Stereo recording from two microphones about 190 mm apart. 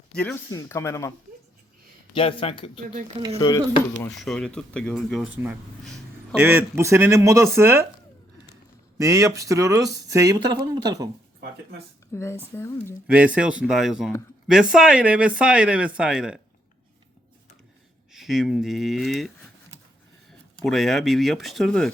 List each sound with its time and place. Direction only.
0.1 s speech: 5° left (ahead or behind)
2.1 s speech: 25° left (ahead or behind)
4.2 s speech: centre (ahead or behind); by 7.9 s 15° right (ahead or behind)
9.0 s speech: 15° right (ahead or behind)
12.1 s speech: 15° left (ahead or behind)
13.1 s speech: 5° right (ahead or behind)
18.1 s speech: centre (ahead or behind)
20.6 s speech: centre (ahead or behind)